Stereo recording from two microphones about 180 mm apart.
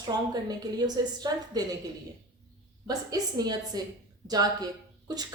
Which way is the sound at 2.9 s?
20° right (ahead or behind).